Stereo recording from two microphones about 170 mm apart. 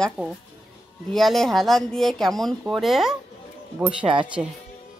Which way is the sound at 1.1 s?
Centre (ahead or behind).